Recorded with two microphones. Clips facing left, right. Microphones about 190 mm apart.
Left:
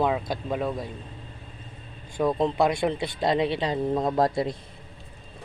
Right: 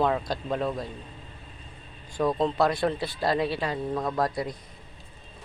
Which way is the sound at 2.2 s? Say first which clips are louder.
Left 1 dB; 15° left (ahead or behind).